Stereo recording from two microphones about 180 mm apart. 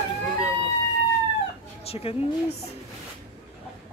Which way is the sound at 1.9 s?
35° left (ahead or behind).